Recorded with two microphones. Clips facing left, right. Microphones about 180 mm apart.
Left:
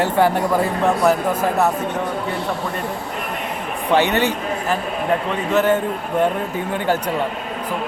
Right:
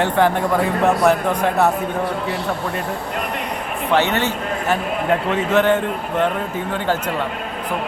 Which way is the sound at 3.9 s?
15° left (ahead or behind).